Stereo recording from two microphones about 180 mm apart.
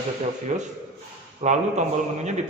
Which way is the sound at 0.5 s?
45° right (ahead or behind).